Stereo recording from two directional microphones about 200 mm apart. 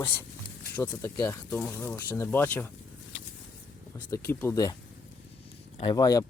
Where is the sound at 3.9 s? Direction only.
15° left (ahead or behind).